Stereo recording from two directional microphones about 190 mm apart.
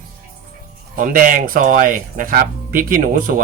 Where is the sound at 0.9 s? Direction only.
45° right (ahead or behind).